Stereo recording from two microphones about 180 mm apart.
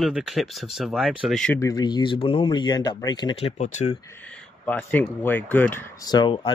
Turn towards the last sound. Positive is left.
turn(degrees=25)  # may be behind; listen again after turning